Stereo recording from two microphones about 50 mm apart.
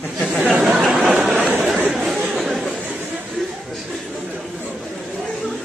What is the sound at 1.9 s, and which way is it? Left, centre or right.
Chatter, centre.